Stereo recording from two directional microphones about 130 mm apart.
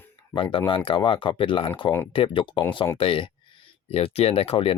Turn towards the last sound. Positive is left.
turn(degrees=45)  # may be behind; listen again after turning